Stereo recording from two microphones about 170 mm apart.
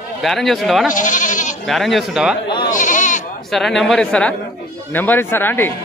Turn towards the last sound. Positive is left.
turn(degrees=10)  # may be behind; listen again after turning